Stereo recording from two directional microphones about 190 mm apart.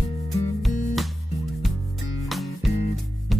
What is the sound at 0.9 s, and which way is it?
Music, centre (ahead or behind).